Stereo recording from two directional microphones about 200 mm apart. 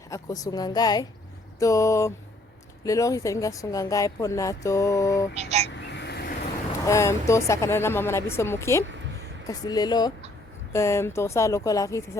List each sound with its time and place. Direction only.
0.1 s a woman's voice: 15° left (ahead or behind)
5.4 s speech: 30° right (ahead or behind)
5.9 s a sound: 60° left (ahead or behind)
6.8 s a woman's voice: 15° left (ahead or behind)